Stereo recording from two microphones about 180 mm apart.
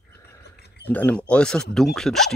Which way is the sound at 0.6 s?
65° left (ahead or behind).